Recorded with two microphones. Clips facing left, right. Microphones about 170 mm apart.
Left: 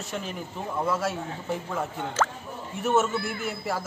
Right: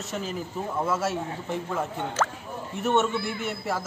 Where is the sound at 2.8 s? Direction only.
Centre (ahead or behind).